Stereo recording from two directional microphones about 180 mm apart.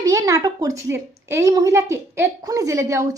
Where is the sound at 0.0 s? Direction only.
20° right (ahead or behind).